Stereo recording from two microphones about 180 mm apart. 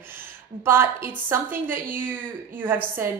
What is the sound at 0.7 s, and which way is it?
A woman's voice, 10° right (ahead or behind).